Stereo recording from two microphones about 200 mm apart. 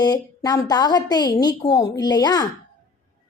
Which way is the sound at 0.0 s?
20° left (ahead or behind).